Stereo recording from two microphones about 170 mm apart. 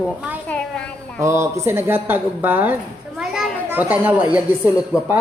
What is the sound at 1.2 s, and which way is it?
Speech, 15° right (ahead or behind).